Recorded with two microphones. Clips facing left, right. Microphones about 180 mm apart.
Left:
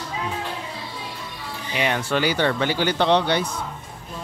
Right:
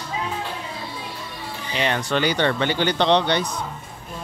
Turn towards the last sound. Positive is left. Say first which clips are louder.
# even
turn(degrees=10)  # may be behind; listen again after turning